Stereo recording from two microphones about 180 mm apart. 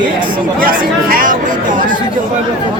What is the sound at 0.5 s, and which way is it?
Speech, 55° right (ahead or behind).